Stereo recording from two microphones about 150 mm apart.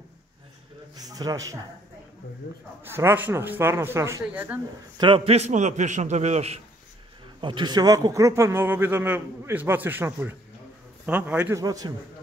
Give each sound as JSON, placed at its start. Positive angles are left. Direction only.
{"t": 0.9, "sound": "a man's voice", "side_deg": -25}
{"t": 2.8, "sound": "a man's voice", "side_deg": -15}
{"t": 4.9, "sound": "a man's voice", "side_deg": -35}
{"t": 7.3, "sound": "a man's voice", "side_deg": -30}
{"t": 11.5, "sound": "a man's voice", "side_deg": -25}